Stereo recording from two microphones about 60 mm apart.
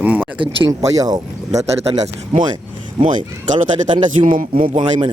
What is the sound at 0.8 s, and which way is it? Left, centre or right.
Speech, right.